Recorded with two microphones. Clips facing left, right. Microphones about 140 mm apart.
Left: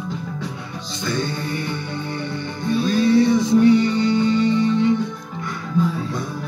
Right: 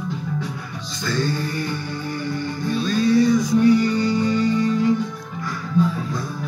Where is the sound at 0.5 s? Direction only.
25° left (ahead or behind).